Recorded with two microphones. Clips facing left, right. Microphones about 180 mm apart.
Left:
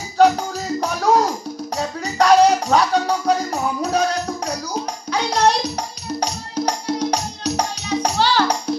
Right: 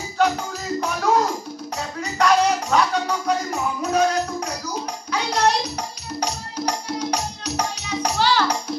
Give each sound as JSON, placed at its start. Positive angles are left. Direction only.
{"t": 0.2, "sound": "music", "side_deg": 35}
{"t": 5.1, "sound": "music", "side_deg": 35}